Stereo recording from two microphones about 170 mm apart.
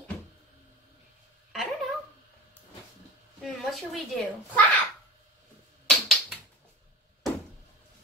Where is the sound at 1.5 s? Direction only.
Centre (ahead or behind).